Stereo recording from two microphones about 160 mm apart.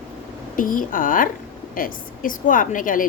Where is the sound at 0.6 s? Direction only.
60° left (ahead or behind).